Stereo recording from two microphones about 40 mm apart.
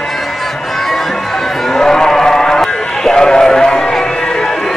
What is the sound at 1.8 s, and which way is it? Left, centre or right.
Run, centre.